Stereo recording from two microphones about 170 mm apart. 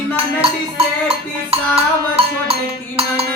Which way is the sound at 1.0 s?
35° right (ahead or behind).